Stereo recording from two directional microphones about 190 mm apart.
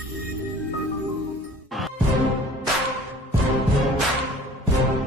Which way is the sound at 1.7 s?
Centre (ahead or behind).